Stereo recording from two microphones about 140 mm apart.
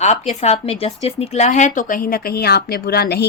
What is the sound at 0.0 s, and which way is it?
Speech, 55° left (ahead or behind).